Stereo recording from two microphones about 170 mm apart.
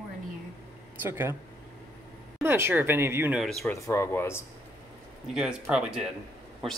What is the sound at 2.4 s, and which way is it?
Speech, 15° right (ahead or behind).